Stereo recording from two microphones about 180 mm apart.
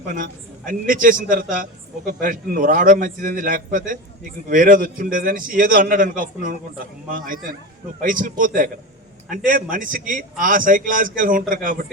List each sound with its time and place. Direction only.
0.1 s a man's voice: 50° right (ahead or behind)